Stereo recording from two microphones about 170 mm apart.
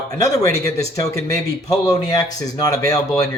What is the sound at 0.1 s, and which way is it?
Speech, 20° left (ahead or behind).